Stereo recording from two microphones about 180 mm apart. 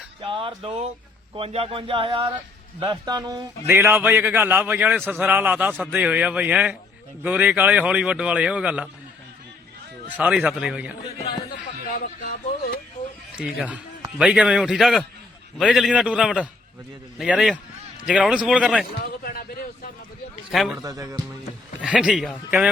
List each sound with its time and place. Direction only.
0.2 s music: 30° right (ahead or behind)
1.4 s speech: 30° right (ahead or behind)
2.8 s music: 20° right (ahead or behind)
3.7 s a man's voice: 15° right (ahead or behind)
10.2 s a man's voice: 5° right (ahead or behind)
13.0 s a sound: 30° left (ahead or behind)
13.3 s a man's voice: 5° right (ahead or behind)
18.9 s a man's voice: 55° left (ahead or behind)
20.5 s a man's voice: centre (ahead or behind)
20.7 s music: 20° right (ahead or behind)
21.8 s a man's voice: 5° right (ahead or behind)